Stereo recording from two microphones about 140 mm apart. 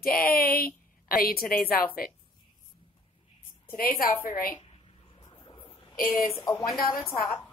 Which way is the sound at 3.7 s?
90° left.